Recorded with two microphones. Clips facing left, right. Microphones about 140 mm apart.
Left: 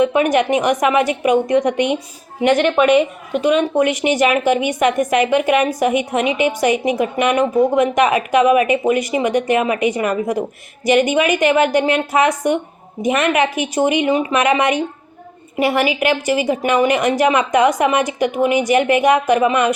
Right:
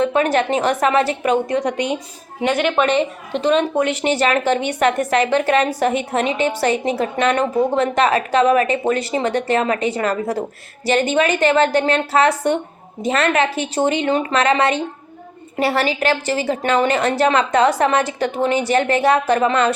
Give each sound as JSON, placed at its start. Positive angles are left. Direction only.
{"t": 0.0, "sound": "a woman's voice", "side_deg": 15}